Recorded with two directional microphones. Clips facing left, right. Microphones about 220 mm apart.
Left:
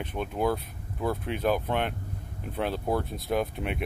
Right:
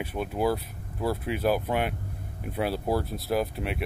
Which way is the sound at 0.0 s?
5° right (ahead or behind).